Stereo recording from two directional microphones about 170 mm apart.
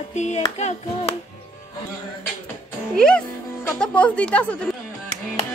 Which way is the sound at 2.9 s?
5° left (ahead or behind).